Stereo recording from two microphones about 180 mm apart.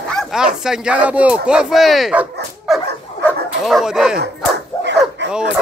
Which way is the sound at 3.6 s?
Centre (ahead or behind).